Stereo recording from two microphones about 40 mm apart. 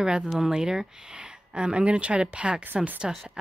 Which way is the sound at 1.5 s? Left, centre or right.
Right.